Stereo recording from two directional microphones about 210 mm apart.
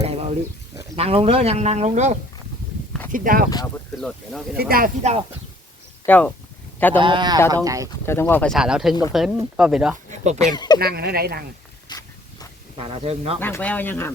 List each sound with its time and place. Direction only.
0.0 s a sound: 30° right (ahead or behind)
0.9 s speech: 30° right (ahead or behind)
4.0 s speech: centre (ahead or behind)
4.7 s speech: 45° right (ahead or behind)
6.1 s speech: 5° left (ahead or behind)
7.0 s speech: 20° right (ahead or behind)
7.9 s speech: 10° left (ahead or behind); by 10.0 s 5° right (ahead or behind)
10.5 s speech: 20° left (ahead or behind)
10.8 s speech: 50° right (ahead or behind)
11.9 s a sound: 15° left (ahead or behind)
12.7 s speech: 25° right (ahead or behind)
13.4 s speech: 10° left (ahead or behind)